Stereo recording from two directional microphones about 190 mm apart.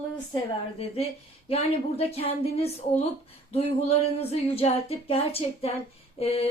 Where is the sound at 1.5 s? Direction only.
30° left (ahead or behind).